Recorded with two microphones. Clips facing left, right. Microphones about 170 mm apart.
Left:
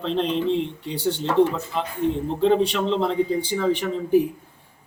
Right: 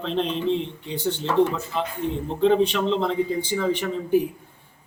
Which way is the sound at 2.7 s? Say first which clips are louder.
Left 1 dB; centre (ahead or behind).